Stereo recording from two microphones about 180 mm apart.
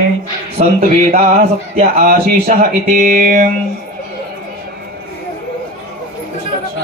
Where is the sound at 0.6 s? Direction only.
40° right (ahead or behind).